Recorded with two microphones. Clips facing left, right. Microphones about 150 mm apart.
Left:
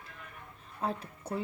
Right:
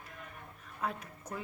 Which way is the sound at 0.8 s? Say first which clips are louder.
Left 3 dB; 30° left (ahead or behind).